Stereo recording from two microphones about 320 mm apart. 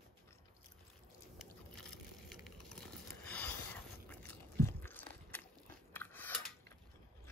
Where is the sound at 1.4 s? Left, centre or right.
Centre.